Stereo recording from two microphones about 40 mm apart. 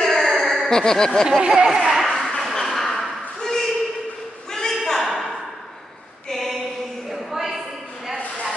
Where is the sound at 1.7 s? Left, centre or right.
Centre.